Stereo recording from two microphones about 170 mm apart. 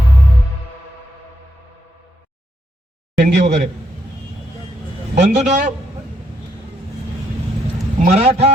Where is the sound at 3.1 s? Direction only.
50° right (ahead or behind).